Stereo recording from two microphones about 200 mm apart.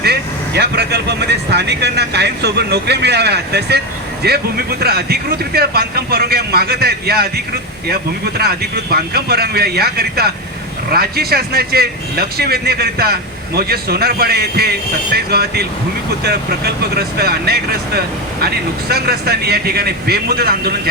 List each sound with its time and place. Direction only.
0.0 s speech: 55° right (ahead or behind)